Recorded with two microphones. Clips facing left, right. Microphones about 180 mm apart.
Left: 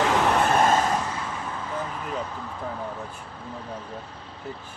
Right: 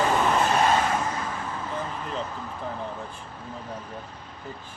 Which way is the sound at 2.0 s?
5° left (ahead or behind).